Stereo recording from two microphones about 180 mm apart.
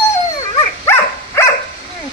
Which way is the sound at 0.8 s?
15° left (ahead or behind).